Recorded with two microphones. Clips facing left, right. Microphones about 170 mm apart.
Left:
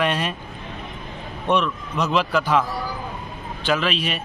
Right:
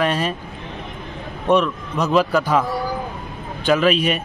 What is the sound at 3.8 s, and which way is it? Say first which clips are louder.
Speech: right 7 dB; 50° right (ahead or behind).